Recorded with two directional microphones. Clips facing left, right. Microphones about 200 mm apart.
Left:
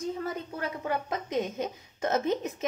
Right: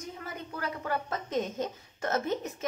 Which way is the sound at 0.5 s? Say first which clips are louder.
Right 1 dB; 20° left (ahead or behind).